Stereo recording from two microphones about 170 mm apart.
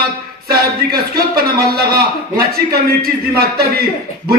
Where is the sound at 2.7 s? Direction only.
65° right (ahead or behind).